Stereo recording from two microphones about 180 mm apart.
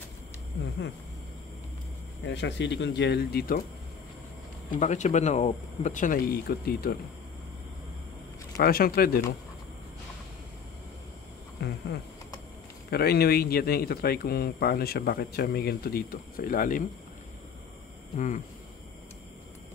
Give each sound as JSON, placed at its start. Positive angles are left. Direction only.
{"t": 2.2, "sound": "speech", "side_deg": 80}
{"t": 4.6, "sound": "speech", "side_deg": 40}
{"t": 8.5, "sound": "speech", "side_deg": 55}
{"t": 11.6, "sound": "a sound", "side_deg": 70}
{"t": 12.9, "sound": "speech", "side_deg": 60}
{"t": 18.1, "sound": "speech", "side_deg": 45}